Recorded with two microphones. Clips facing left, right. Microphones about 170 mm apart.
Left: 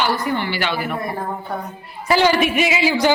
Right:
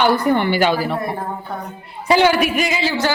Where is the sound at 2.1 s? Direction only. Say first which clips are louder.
Right 2 dB; 15° right (ahead or behind).